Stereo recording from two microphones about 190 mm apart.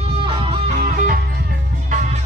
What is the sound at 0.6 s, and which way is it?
Music, 45° right (ahead or behind).